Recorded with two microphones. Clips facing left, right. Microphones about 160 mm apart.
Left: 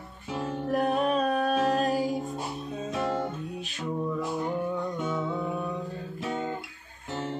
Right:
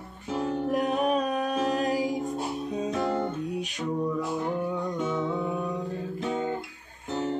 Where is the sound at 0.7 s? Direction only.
15° right (ahead or behind).